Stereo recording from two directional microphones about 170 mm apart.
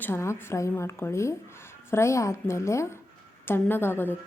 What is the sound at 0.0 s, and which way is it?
Speech, 15° left (ahead or behind).